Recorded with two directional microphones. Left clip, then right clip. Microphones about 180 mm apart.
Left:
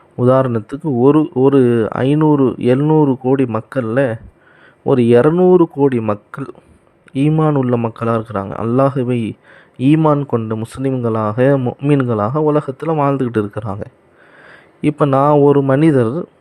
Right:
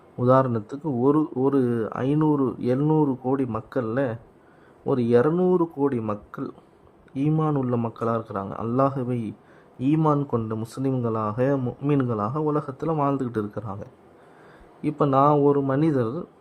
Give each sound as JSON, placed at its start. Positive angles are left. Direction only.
{"t": 0.2, "sound": "speech", "side_deg": 25}
{"t": 11.6, "sound": "speech", "side_deg": 15}
{"t": 11.9, "sound": "speech", "side_deg": 25}